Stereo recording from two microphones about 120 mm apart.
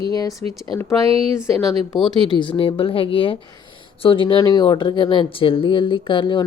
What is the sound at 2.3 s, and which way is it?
Speech, 45° left (ahead or behind).